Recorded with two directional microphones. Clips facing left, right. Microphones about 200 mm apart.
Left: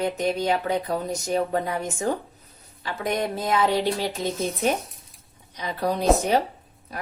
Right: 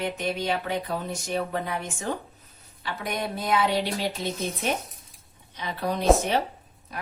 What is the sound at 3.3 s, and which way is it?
Speech, 40° left (ahead or behind).